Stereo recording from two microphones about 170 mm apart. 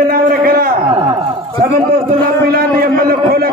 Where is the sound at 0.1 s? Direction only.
60° right (ahead or behind).